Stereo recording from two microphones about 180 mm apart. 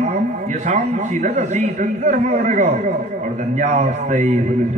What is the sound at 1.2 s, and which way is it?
A man's voice, 40° right (ahead or behind).